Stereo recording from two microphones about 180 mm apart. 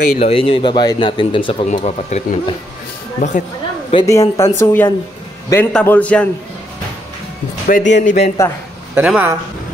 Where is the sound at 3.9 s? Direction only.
20° left (ahead or behind).